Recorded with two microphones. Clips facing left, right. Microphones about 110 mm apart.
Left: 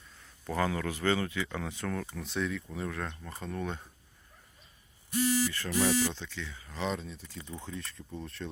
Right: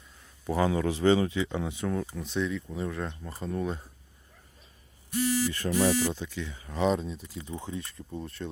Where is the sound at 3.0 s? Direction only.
15° right (ahead or behind).